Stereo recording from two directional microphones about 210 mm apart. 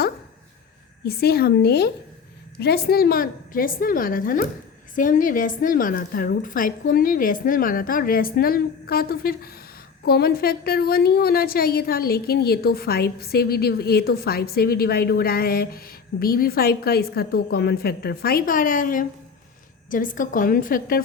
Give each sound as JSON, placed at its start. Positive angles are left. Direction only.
{"t": 1.0, "sound": "a woman's voice", "side_deg": 45}